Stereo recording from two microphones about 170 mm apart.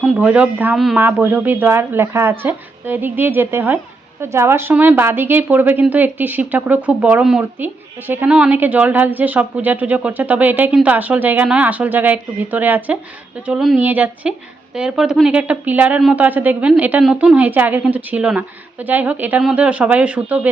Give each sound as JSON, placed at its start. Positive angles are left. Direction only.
{"t": 0.0, "sound": "a woman's voice", "side_deg": -5}